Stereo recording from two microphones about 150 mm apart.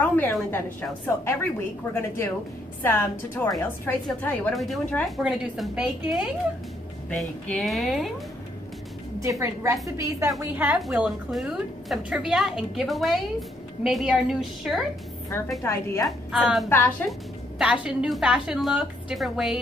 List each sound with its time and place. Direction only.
0.0 s a woman's voice: 10° left (ahead or behind)
4.6 s a woman's voice: centre (ahead or behind)
9.2 s a woman's voice: 20° right (ahead or behind); by 14.9 s centre (ahead or behind)
15.6 s a woman's voice: 15° left (ahead or behind)
16.3 s a woman's voice: 5° right (ahead or behind)
16.6 s a woman's voice: 15° left (ahead or behind)
17.6 s a woman's voice: 5° right (ahead or behind)